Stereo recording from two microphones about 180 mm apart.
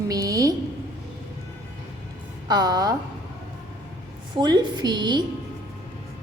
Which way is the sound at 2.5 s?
20° right (ahead or behind).